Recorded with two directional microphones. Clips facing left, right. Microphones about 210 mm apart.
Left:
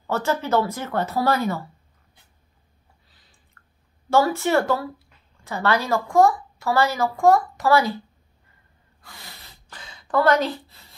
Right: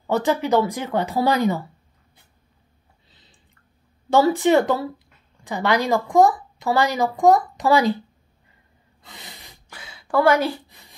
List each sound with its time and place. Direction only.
0.0 s speech: 15° right (ahead or behind)
4.1 s speech: 15° right (ahead or behind)
9.0 s a sound: 20° right (ahead or behind)